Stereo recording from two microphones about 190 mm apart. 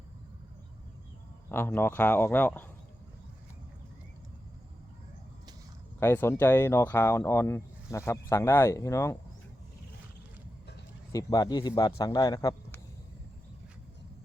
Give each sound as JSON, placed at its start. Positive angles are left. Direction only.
{"t": 1.5, "sound": "speech", "side_deg": 10}
{"t": 6.0, "sound": "speech", "side_deg": 10}
{"t": 11.1, "sound": "a man's voice", "side_deg": 20}